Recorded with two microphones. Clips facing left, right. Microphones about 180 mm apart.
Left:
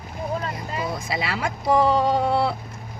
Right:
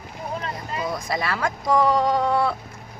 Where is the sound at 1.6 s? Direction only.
25° left (ahead or behind).